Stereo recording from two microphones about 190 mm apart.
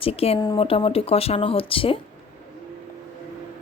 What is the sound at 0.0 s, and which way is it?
A woman's voice, 30° left (ahead or behind).